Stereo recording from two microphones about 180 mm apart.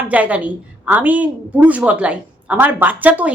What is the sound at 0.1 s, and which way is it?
A woman's voice, 10° right (ahead or behind).